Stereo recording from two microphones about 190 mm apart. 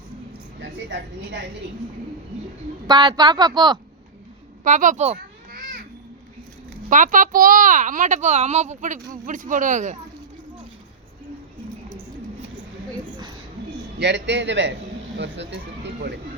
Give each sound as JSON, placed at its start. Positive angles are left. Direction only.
{"t": 0.6, "sound": "a woman's voice", "side_deg": -65}
{"t": 2.8, "sound": "a woman's voice", "side_deg": -20}
{"t": 4.6, "sound": "a child's voice", "side_deg": -40}
{"t": 6.9, "sound": "speech", "side_deg": -40}
{"t": 14.0, "sound": "a man's voice", "side_deg": -65}